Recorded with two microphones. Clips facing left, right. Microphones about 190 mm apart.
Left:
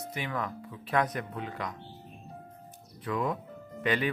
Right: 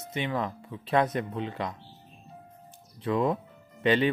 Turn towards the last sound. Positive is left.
turn(degrees=-25)  # may be behind; listen again after turning